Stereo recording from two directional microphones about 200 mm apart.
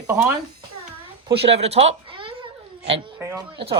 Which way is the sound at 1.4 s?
30° right (ahead or behind).